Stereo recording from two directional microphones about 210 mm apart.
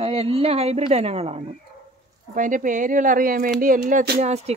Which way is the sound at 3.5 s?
45° right (ahead or behind).